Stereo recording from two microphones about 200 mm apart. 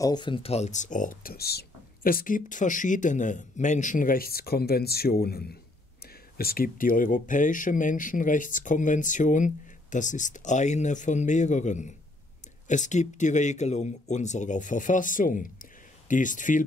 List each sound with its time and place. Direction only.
0.0 s speech: 20° left (ahead or behind); by 16.6 s 40° left (ahead or behind)